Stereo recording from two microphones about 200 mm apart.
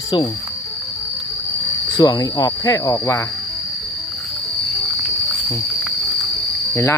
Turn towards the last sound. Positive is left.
turn(degrees=15)  # may be behind; listen again after turning